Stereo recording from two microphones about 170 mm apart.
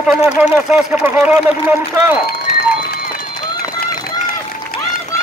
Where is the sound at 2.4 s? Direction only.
65° left (ahead or behind).